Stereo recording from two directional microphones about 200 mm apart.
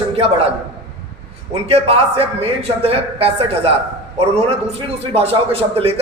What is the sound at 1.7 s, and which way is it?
Speech, 30° right (ahead or behind).